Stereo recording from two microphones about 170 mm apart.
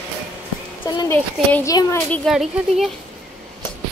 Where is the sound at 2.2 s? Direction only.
Centre (ahead or behind).